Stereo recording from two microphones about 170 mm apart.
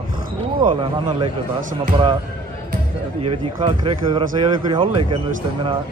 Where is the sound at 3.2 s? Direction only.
30° right (ahead or behind).